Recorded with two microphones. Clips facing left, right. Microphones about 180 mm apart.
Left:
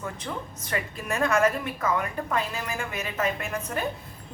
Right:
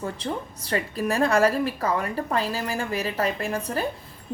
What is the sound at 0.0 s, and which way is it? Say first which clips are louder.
A woman's voice: right 4 dB; 30° right (ahead or behind).